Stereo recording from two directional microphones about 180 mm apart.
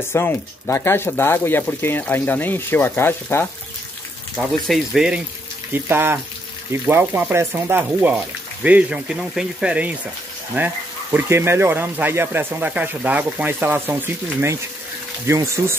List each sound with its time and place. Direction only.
0.1 s speech: 15° left (ahead or behind)
4.4 s speech: centre (ahead or behind)